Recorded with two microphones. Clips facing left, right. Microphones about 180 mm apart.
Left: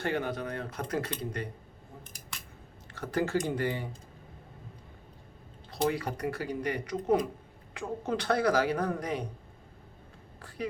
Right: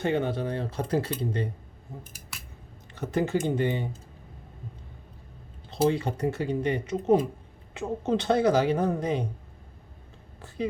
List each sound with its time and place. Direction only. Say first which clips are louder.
0.0 s speech: right 5 dB; 25° right (ahead or behind)
2.9 s speech: right 3 dB; 20° right (ahead or behind)
5.9 s speech: right 5 dB; 25° right (ahead or behind)